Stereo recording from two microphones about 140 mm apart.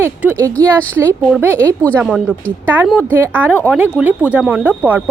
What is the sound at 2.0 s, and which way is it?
Speech, 5° right (ahead or behind).